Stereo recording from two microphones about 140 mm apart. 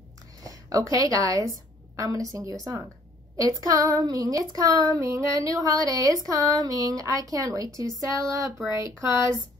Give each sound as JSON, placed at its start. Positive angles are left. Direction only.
{"t": 0.4, "sound": "a woman's voice", "side_deg": -25}